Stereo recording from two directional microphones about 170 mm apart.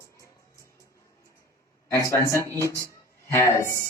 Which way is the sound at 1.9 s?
15° left (ahead or behind).